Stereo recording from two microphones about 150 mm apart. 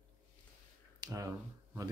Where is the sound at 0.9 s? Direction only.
25° right (ahead or behind).